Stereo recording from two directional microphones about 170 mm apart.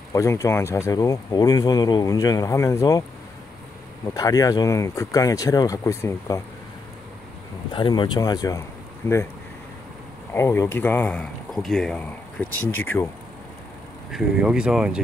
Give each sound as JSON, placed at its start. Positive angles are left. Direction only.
{"t": 0.1, "sound": "speech", "side_deg": 15}
{"t": 4.1, "sound": "speech", "side_deg": 20}
{"t": 7.7, "sound": "speech", "side_deg": 30}
{"t": 10.3, "sound": "speech", "side_deg": 15}
{"t": 14.1, "sound": "speech", "side_deg": -5}